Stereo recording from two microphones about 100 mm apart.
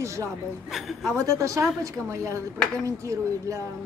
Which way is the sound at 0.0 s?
30° right (ahead or behind).